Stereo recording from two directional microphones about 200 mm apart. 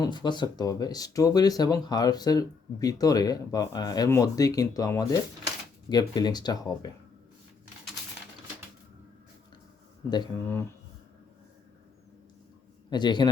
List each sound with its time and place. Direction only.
0.0 s speech: 20° left (ahead or behind)
10.4 s speech: 10° left (ahead or behind)
12.9 s speech: 20° left (ahead or behind)